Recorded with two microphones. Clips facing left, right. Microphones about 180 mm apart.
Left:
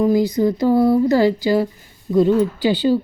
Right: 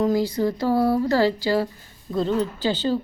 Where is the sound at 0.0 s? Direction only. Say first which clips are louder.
Left 5 dB; 15° left (ahead or behind).